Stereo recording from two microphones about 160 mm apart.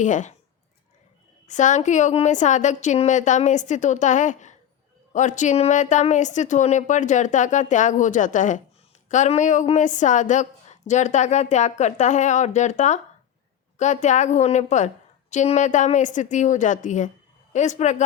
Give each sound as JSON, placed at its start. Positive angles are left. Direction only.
{"t": 0.0, "sound": "a woman's voice", "side_deg": 50}
{"t": 1.5, "sound": "a woman's voice", "side_deg": 50}